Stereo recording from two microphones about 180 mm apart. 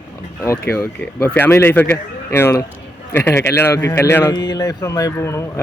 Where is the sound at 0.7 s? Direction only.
15° left (ahead or behind).